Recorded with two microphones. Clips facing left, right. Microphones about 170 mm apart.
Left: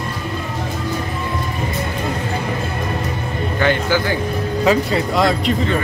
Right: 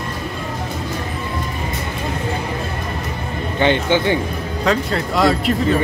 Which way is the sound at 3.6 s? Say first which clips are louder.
Right 2 dB; 25° right (ahead or behind).